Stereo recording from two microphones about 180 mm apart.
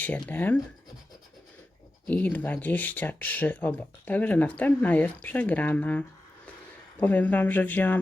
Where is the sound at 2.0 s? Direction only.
10° left (ahead or behind).